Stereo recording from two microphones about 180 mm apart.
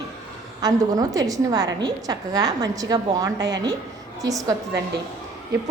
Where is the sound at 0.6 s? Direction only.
20° right (ahead or behind).